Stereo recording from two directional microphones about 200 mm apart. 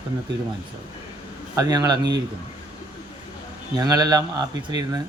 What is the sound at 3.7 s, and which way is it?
Speech, 20° right (ahead or behind).